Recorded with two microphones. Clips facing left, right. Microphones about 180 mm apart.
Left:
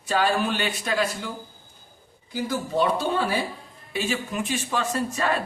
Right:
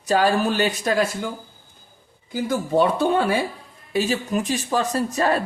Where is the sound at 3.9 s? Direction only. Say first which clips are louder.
Right 6 dB; 40° right (ahead or behind).